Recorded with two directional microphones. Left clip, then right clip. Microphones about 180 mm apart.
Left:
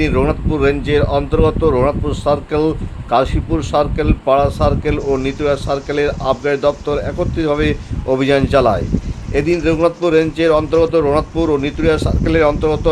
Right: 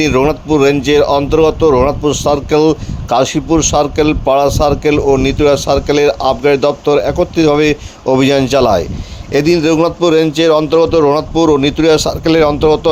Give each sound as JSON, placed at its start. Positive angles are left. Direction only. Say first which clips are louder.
{"t": 0.0, "sound": "speech", "louder": "right 5 dB", "side_deg": -35}